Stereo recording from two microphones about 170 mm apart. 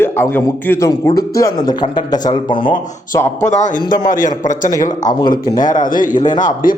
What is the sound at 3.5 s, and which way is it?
Speech, 45° left (ahead or behind).